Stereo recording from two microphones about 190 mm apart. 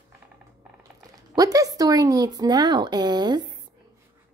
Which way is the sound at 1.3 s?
20° right (ahead or behind).